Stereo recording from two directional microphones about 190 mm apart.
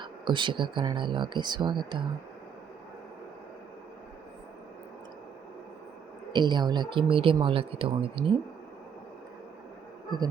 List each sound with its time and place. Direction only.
0.0 s speech: 25° right (ahead or behind)
6.3 s speech: 25° right (ahead or behind)